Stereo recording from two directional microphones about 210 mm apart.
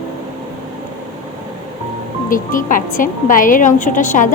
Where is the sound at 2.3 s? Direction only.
40° left (ahead or behind).